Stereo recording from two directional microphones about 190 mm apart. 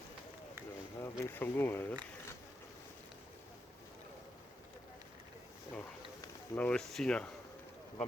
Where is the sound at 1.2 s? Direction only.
10° left (ahead or behind).